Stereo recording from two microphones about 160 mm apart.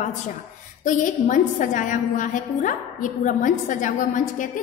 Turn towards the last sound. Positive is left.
turn(degrees=55)  # may be behind; listen again after turning